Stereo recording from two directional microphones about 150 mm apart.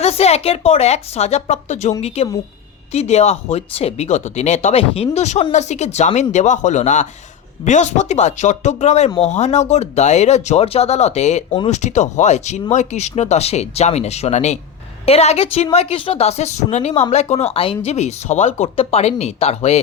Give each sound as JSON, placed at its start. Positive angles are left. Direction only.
{"t": 0.0, "sound": "a woman's voice", "side_deg": 45}